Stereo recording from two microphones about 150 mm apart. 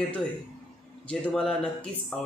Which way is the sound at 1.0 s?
5° left (ahead or behind).